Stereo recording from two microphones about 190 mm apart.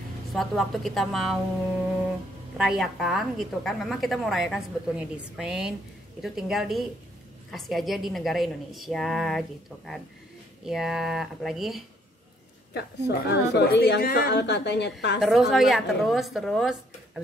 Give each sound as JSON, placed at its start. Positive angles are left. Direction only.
{"t": 0.3, "sound": "a woman's voice", "side_deg": 0}
{"t": 2.5, "sound": "a woman's voice", "side_deg": -5}
{"t": 10.7, "sound": "a woman's voice", "side_deg": 0}
{"t": 12.7, "sound": "a woman's voice", "side_deg": 60}
{"t": 15.1, "sound": "a woman's voice", "side_deg": 0}